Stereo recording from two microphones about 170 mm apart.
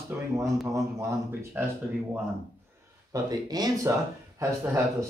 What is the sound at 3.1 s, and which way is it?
Speech, 20° right (ahead or behind).